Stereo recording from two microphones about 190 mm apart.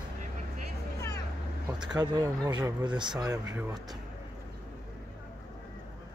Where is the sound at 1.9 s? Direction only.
20° right (ahead or behind).